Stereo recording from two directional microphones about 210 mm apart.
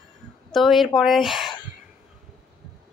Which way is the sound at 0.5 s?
Centre (ahead or behind).